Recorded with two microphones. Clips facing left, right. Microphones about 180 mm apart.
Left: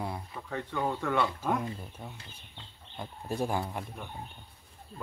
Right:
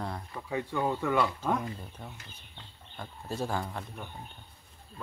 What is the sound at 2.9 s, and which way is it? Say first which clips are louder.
Speech: left 2 dB; 15° left (ahead or behind).